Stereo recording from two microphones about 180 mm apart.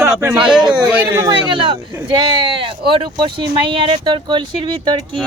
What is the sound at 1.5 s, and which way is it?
Speech, 25° right (ahead or behind).